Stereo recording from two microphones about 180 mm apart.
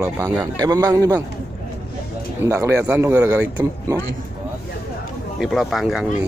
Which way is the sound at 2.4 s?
15° right (ahead or behind).